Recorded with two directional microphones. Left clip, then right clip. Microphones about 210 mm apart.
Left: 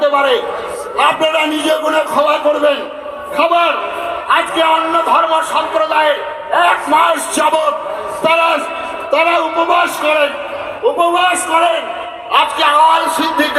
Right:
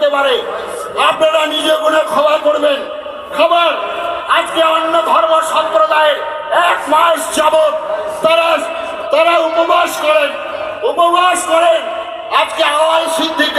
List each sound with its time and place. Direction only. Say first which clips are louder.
0.0 s a man's voice: even; 20° right (ahead or behind)
4.3 s a man's voice: even; 15° right (ahead or behind)
10.9 s a man's voice: right 3 dB; 20° right (ahead or behind)